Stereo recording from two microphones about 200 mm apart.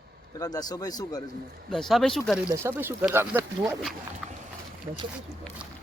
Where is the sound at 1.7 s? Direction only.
Centre (ahead or behind).